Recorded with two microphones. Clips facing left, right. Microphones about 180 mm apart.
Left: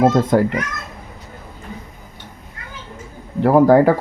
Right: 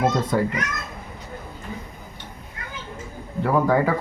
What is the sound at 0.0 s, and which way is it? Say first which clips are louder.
Speech: left 7 dB; 50° left (ahead or behind).